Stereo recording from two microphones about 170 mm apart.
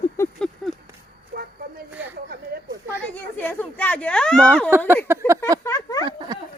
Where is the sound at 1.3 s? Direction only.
65° right (ahead or behind).